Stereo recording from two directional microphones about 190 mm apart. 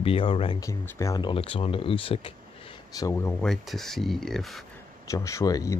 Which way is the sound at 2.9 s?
15° left (ahead or behind).